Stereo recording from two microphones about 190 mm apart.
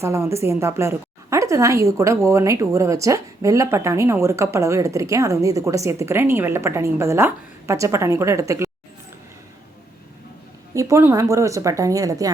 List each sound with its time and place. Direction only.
0.0 s a woman's voice: 15° right (ahead or behind)
10.8 s a woman's voice: 15° right (ahead or behind)